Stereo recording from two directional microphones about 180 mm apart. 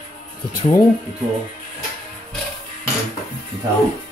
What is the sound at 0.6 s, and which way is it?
Speech, 25° left (ahead or behind).